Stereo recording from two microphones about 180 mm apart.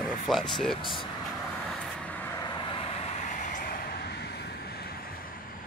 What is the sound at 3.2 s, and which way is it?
Vehicle, 45° left (ahead or behind).